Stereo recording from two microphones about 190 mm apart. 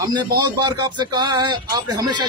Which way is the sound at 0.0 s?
20° right (ahead or behind).